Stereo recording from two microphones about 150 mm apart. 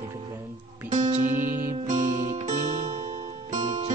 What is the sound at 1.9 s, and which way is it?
Music, 55° right (ahead or behind).